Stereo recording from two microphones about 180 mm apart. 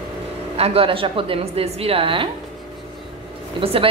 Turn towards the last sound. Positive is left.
turn(degrees=-30)  # may be behind; listen again after turning